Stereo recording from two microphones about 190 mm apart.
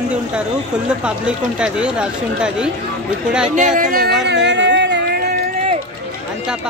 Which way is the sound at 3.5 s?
45° right (ahead or behind).